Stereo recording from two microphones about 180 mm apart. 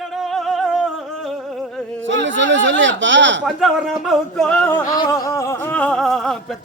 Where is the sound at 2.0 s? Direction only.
90° right.